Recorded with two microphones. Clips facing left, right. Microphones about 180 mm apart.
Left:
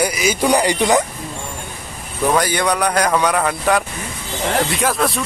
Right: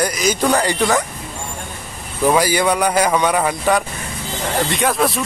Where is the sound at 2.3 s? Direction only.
5° right (ahead or behind).